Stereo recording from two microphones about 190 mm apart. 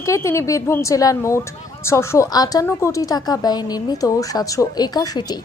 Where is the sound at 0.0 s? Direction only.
15° left (ahead or behind).